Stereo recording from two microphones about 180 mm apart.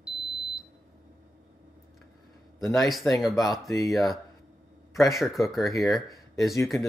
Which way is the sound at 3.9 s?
Centre (ahead or behind).